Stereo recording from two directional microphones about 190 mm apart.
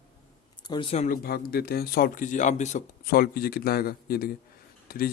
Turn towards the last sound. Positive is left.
turn(degrees=50)  # may be behind; listen again after turning